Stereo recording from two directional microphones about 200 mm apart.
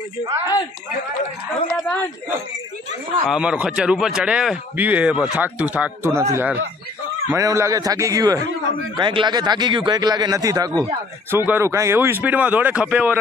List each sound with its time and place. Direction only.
1.7 s a man's voice: 5° left (ahead or behind)
3.3 s a man's voice: 5° right (ahead or behind)